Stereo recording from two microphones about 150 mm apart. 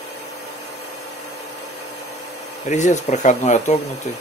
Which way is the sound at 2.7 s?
50° left (ahead or behind).